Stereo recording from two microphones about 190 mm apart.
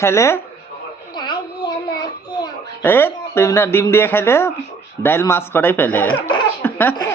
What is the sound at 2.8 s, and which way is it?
Speech, 10° left (ahead or behind).